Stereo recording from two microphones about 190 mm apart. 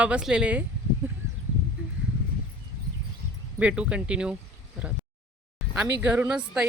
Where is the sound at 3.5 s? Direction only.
5° right (ahead or behind).